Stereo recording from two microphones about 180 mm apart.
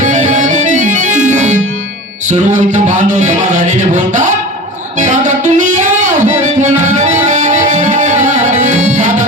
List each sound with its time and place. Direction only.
0.0 s music: 45° right (ahead or behind)
2.3 s a sound: 40° right (ahead or behind)
4.9 s music: 40° right (ahead or behind)